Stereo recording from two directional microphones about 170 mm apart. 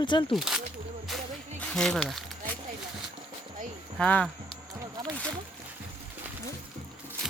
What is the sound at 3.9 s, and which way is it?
Speech, 5° left (ahead or behind).